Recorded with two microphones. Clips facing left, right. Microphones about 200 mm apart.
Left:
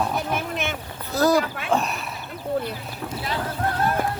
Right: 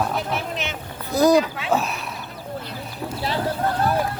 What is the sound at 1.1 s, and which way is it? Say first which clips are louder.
Speech: right 3 dB; 15° right (ahead or behind).